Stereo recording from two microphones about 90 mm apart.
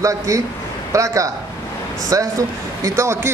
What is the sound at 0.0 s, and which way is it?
Speech, 35° right (ahead or behind).